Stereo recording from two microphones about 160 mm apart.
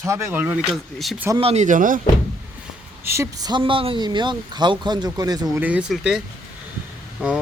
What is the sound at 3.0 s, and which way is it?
Speech, 15° right (ahead or behind).